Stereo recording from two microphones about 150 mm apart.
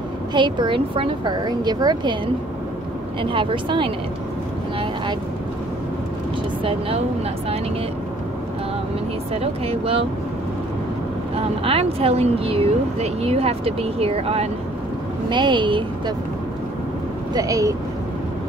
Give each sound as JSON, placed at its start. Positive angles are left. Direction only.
{"t": 0.3, "sound": "speech", "side_deg": -30}
{"t": 3.2, "sound": "speech", "side_deg": -35}
{"t": 6.6, "sound": "speech", "side_deg": -40}
{"t": 9.3, "sound": "speech", "side_deg": -40}
{"t": 11.6, "sound": "speech", "side_deg": -40}
{"t": 15.2, "sound": "speech", "side_deg": -30}
{"t": 17.3, "sound": "speech", "side_deg": -25}